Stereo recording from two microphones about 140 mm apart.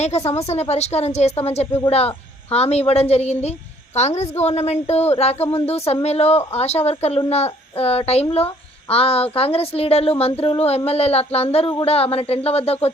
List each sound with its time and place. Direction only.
0.0 s speech: 50° left (ahead or behind)